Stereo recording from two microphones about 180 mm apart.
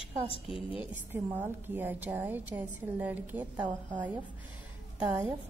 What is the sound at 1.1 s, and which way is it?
A woman's voice, 10° right (ahead or behind).